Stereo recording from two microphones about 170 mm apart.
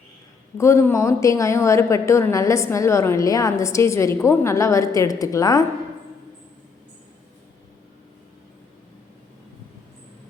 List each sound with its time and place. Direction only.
0.5 s a woman's voice: 15° left (ahead or behind)